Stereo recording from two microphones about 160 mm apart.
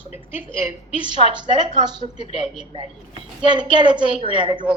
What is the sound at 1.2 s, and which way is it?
Speech, 30° right (ahead or behind).